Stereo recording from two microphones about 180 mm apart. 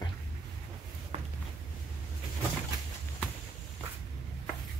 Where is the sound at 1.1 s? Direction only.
40° right (ahead or behind).